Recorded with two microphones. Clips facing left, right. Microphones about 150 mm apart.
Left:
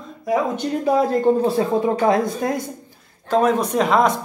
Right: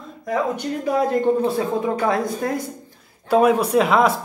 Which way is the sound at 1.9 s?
20° left (ahead or behind).